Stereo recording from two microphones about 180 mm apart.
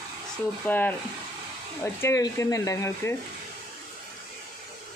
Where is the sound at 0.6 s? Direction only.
10° left (ahead or behind).